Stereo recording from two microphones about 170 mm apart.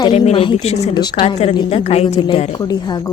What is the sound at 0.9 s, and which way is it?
A woman's voice, 25° left (ahead or behind).